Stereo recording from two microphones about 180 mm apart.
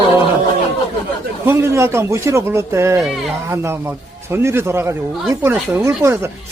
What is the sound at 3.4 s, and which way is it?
A man's voice, 15° right (ahead or behind).